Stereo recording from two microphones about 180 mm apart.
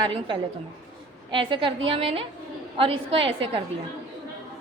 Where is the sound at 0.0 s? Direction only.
25° right (ahead or behind).